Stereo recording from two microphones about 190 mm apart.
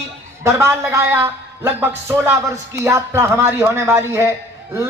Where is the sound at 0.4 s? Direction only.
15° right (ahead or behind).